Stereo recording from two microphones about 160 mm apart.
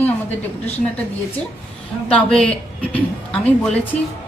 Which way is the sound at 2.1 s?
5° left (ahead or behind).